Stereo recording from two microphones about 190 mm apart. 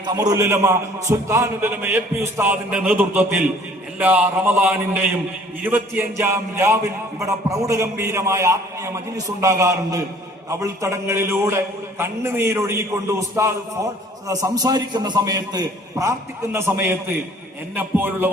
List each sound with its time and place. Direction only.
0.0 s a man's voice: 20° right (ahead or behind)
14.5 s a man's voice: 20° right (ahead or behind)